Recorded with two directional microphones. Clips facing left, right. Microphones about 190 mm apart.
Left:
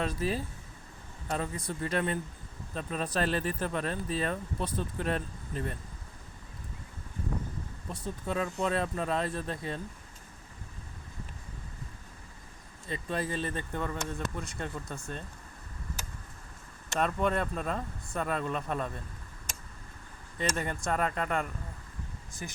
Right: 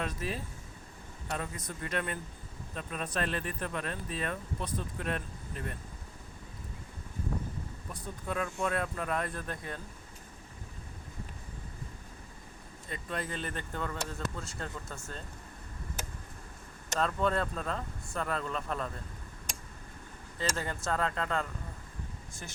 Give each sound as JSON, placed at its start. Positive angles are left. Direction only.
{"t": 0.0, "sound": "speech", "side_deg": 30}
{"t": 1.4, "sound": "speech", "side_deg": 30}
{"t": 7.9, "sound": "speech", "side_deg": 25}
{"t": 12.9, "sound": "speech", "side_deg": 25}
{"t": 17.0, "sound": "speech", "side_deg": 15}
{"t": 20.5, "sound": "speech", "side_deg": 15}